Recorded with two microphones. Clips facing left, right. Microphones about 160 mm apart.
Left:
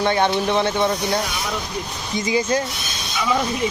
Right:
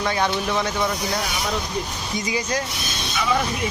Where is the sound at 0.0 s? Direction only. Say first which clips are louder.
Left 4 dB; 25° left (ahead or behind).